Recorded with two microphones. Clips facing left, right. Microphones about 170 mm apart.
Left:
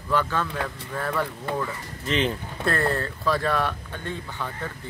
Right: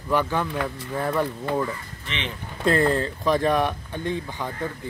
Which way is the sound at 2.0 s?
40° left (ahead or behind).